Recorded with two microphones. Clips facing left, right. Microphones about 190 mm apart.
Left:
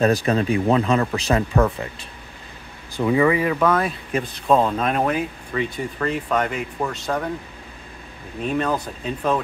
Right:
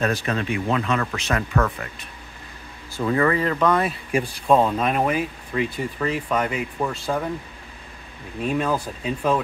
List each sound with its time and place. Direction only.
0.0 s speech: 35° left (ahead or behind)
3.0 s speech: 10° left (ahead or behind)
4.1 s speech: 10° right (ahead or behind)
8.4 s speech: 5° right (ahead or behind)